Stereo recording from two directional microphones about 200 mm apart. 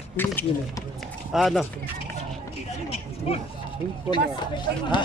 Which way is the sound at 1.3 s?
Centre (ahead or behind).